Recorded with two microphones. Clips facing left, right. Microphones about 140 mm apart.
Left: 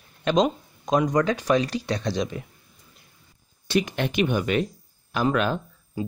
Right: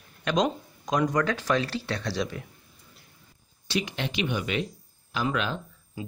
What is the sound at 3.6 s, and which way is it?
Speech, 50° left (ahead or behind).